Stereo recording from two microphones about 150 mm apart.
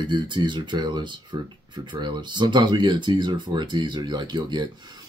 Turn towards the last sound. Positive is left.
turn(degrees=-30)  # may be behind; listen again after turning